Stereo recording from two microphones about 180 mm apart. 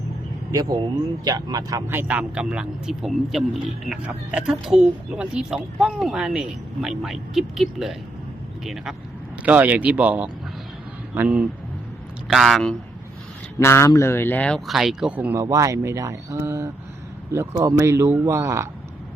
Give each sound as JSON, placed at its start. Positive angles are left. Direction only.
{"t": 0.5, "sound": "speech", "side_deg": -20}
{"t": 13.6, "sound": "speech", "side_deg": 15}